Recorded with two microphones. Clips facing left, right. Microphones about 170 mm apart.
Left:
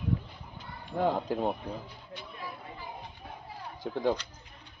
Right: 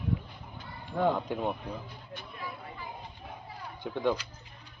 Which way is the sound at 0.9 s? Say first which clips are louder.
Even; 35° left (ahead or behind).